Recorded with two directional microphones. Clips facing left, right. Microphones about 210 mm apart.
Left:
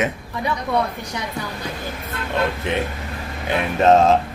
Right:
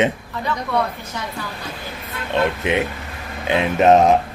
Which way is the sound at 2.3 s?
15° right (ahead or behind).